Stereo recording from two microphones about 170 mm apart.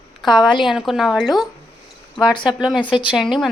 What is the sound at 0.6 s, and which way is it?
Speech, centre (ahead or behind).